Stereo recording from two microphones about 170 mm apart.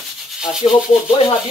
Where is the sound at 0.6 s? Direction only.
30° left (ahead or behind).